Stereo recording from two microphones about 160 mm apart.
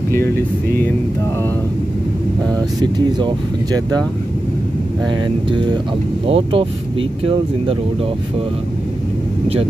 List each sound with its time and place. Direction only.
2.8 s speech: 30° right (ahead or behind)
5.1 s speech: 30° right (ahead or behind)